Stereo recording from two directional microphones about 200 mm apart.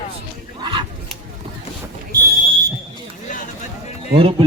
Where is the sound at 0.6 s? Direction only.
25° right (ahead or behind).